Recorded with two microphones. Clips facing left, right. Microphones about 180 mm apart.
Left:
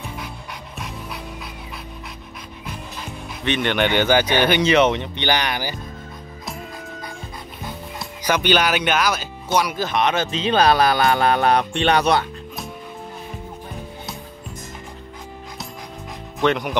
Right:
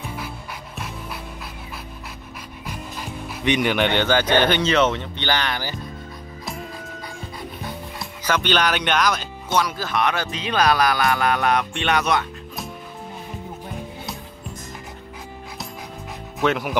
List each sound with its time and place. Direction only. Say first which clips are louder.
0.0 s pant: right 1 dB; centre (ahead or behind)
2.7 s music: right 2 dB; 10° right (ahead or behind)
3.7 s speech: left 2 dB; 5° left (ahead or behind)
8.2 s speech: left 2 dB; 10° left (ahead or behind); by 12.3 s 30° left (ahead or behind)
16.3 s speech: left 2 dB; 5° right (ahead or behind)